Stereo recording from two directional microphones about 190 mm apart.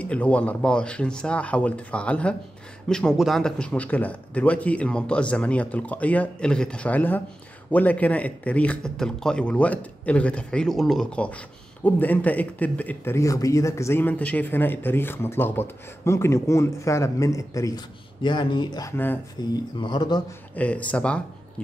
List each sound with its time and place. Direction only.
0.0 s speech: 5° left (ahead or behind); by 20.2 s 20° left (ahead or behind)
20.5 s speech: 10° left (ahead or behind)